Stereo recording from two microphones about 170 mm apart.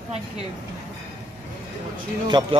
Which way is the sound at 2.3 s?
25° right (ahead or behind).